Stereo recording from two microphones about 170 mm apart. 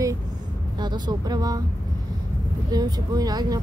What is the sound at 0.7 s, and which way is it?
Speech, 25° right (ahead or behind).